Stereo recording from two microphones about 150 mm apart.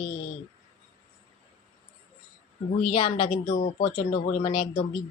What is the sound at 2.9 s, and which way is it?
Speech, 35° left (ahead or behind).